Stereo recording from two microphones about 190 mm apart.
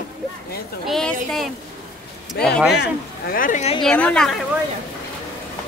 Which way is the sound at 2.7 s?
55° left (ahead or behind).